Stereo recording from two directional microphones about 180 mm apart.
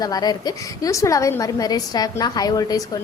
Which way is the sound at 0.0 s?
20° left (ahead or behind).